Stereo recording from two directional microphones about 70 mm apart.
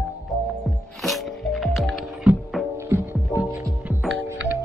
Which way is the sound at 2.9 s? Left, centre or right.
Right.